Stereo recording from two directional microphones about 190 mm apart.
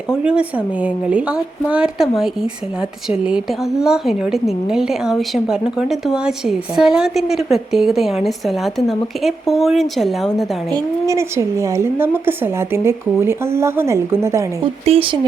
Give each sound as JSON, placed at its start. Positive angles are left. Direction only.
{"t": 0.1, "sound": "a woman's voice", "side_deg": -5}
{"t": 10.7, "sound": "a woman's voice", "side_deg": -20}
{"t": 14.6, "sound": "speech", "side_deg": -30}